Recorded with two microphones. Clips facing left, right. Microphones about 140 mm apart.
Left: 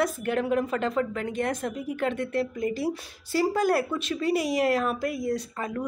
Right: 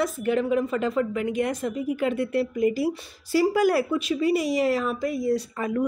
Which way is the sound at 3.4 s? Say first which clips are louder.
Right 3 dB; 10° right (ahead or behind).